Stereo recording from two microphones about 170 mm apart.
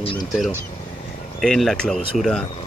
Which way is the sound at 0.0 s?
30° left (ahead or behind).